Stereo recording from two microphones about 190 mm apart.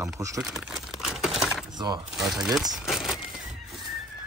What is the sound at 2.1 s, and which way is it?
Speech, centre (ahead or behind).